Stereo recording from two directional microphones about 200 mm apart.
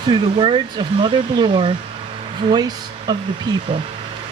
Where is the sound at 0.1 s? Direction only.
25° right (ahead or behind).